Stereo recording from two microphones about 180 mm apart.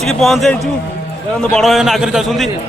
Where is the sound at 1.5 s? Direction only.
Centre (ahead or behind).